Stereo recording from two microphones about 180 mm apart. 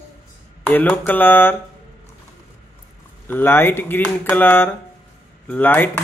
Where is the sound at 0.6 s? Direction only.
10° left (ahead or behind).